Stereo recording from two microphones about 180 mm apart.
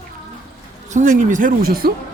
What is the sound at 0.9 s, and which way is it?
Speech, 45° right (ahead or behind).